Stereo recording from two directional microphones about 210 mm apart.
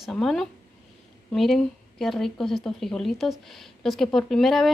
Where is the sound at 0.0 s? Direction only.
Centre (ahead or behind).